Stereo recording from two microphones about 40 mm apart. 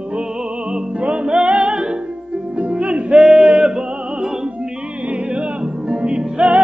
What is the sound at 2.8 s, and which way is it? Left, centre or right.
Music, right.